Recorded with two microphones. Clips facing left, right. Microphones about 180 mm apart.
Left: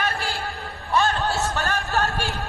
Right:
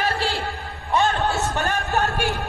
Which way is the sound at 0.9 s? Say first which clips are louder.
Right 1 dB; 20° right (ahead or behind).